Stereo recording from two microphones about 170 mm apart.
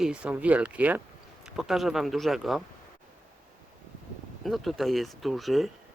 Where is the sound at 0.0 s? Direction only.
5° right (ahead or behind).